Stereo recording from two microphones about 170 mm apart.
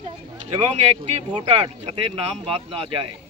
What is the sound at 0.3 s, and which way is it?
Speech, 40° right (ahead or behind).